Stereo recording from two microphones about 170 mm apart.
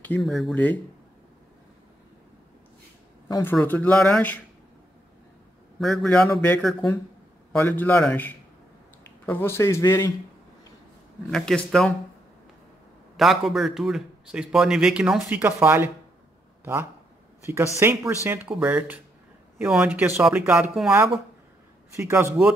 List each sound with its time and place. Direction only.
0.0 s a man's voice: 5° left (ahead or behind)
3.3 s speech: 20° left (ahead or behind)
3.5 s a man's voice: 10° left (ahead or behind)
5.8 s a man's voice: 5° left (ahead or behind)
11.2 s a man's voice: 5° left (ahead or behind)
13.1 s a man's voice: centre (ahead or behind)
17.5 s speech: 15° right (ahead or behind)
21.9 s speech: 15° right (ahead or behind)